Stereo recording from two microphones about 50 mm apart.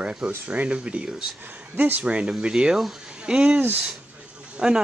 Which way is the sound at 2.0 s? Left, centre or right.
Right.